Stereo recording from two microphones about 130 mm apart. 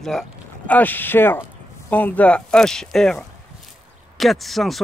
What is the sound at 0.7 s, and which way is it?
Speech, 15° left (ahead or behind).